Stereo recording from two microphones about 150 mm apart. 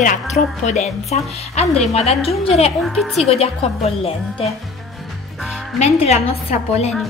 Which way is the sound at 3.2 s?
40° left (ahead or behind).